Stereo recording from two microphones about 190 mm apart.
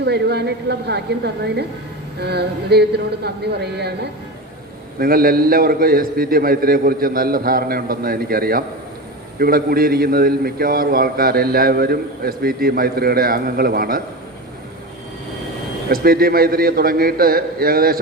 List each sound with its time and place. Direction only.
0.0 s a woman's voice: 60° right (ahead or behind)
4.9 s a man's voice: 50° right (ahead or behind)
15.9 s a man's voice: 55° right (ahead or behind)